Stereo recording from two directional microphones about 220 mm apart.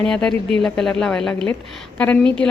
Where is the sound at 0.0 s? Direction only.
5° left (ahead or behind).